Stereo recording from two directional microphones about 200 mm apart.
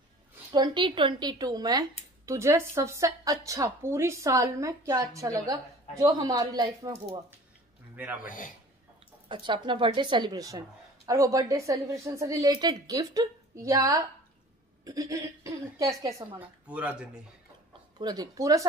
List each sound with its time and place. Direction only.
0.5 s speech: 25° right (ahead or behind)
7.9 s speech: 10° right (ahead or behind)
8.2 s a man's voice: 40° left (ahead or behind)
9.3 s a woman's voice: 25° right (ahead or behind); by 17.2 s 5° right (ahead or behind)
17.9 s a woman's voice: 20° right (ahead or behind)